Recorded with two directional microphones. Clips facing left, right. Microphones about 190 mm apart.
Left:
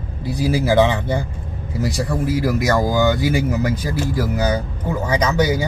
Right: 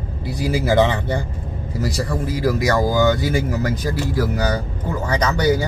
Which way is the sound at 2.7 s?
15° left (ahead or behind).